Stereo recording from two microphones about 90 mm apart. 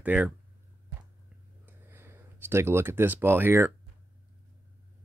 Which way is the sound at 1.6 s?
25° right (ahead or behind).